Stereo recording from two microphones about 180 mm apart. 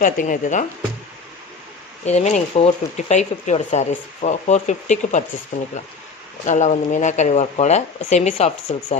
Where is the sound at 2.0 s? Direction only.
40° left (ahead or behind).